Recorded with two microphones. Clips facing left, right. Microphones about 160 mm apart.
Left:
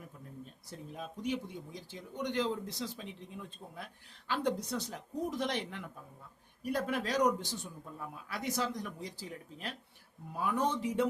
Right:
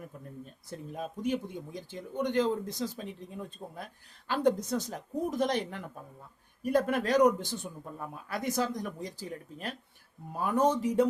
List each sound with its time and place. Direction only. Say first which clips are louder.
0.7 s a man's voice: right 6 dB; 50° right (ahead or behind)